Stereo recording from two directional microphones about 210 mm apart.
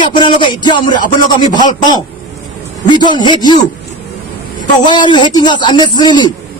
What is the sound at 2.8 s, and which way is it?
Speech, 20° left (ahead or behind).